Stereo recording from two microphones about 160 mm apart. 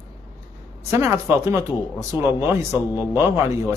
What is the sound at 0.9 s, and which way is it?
A man's voice, 20° right (ahead or behind).